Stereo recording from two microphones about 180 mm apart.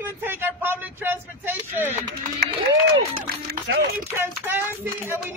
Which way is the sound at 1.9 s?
55° right (ahead or behind).